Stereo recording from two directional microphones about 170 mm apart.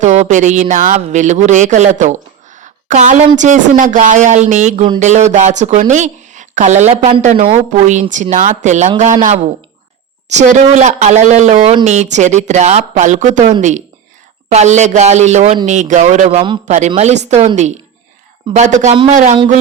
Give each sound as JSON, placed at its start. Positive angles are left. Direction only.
{"t": 0.0, "sound": "a woman's voice", "side_deg": -45}
{"t": 2.6, "sound": "a sound", "side_deg": -45}
{"t": 3.3, "sound": "a woman's voice", "side_deg": -45}